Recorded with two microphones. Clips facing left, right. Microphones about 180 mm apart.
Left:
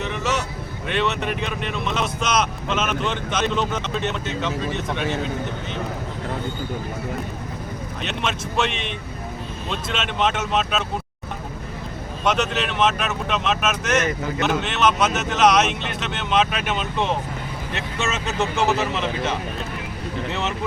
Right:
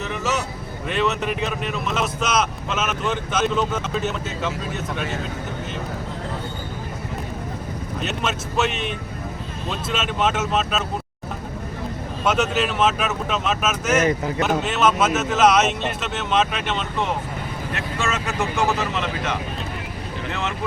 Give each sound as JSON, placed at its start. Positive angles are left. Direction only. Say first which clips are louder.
{"t": 0.0, "sound": "vehicle", "louder": "even", "side_deg": 0}
{"t": 0.9, "sound": "speech", "louder": "right 1 dB", "side_deg": 0}
{"t": 8.0, "sound": "speech", "louder": "even", "side_deg": -5}
{"t": 9.9, "sound": "speech", "louder": "right 1 dB", "side_deg": -5}
{"t": 12.2, "sound": "speech", "louder": "right 1 dB", "side_deg": -5}
{"t": 18.0, "sound": "speech", "louder": "left 1 dB", "side_deg": 25}